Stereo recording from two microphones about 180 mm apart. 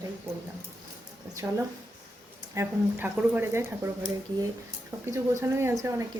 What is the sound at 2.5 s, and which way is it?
Speech, 10° right (ahead or behind).